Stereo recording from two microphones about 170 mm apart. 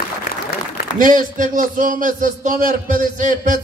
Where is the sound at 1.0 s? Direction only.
50° right (ahead or behind).